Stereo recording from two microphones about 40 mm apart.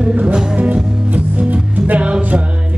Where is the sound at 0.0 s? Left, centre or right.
Right.